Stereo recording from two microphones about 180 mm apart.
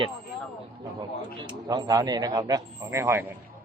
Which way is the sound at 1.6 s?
20° right (ahead or behind).